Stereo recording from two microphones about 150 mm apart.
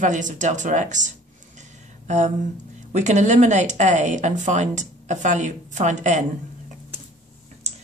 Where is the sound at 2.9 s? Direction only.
50° right (ahead or behind).